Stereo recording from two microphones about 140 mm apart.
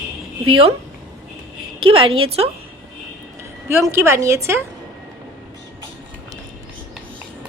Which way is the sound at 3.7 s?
15° right (ahead or behind).